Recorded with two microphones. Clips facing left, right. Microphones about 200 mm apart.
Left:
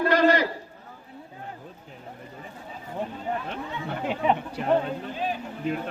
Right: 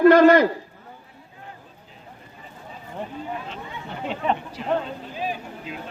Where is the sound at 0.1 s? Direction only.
50° right (ahead or behind).